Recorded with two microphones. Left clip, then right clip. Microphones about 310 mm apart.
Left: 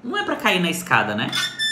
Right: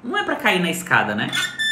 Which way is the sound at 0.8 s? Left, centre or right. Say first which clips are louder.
Right 1 dB; centre.